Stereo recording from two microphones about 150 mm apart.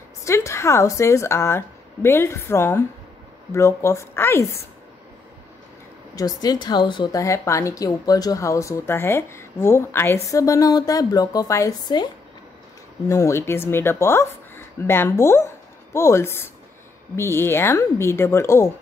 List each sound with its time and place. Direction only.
0.2 s a woman's voice: 20° left (ahead or behind)
6.1 s a woman's voice: 25° left (ahead or behind)
13.1 s a woman's voice: 20° left (ahead or behind)